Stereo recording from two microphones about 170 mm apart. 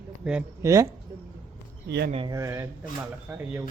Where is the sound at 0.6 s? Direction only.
20° right (ahead or behind).